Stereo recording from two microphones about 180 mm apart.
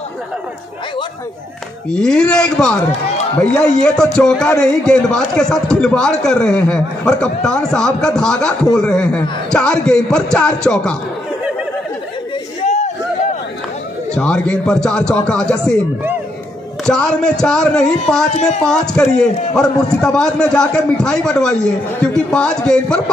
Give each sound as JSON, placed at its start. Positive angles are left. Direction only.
{"t": 1.9, "sound": "a man's voice", "side_deg": 5}
{"t": 12.6, "sound": "a sound", "side_deg": 40}
{"t": 14.1, "sound": "a man's voice", "side_deg": 5}
{"t": 16.8, "sound": "a man's voice", "side_deg": 5}
{"t": 18.3, "sound": "speech", "side_deg": 40}
{"t": 18.6, "sound": "a man's voice", "side_deg": 5}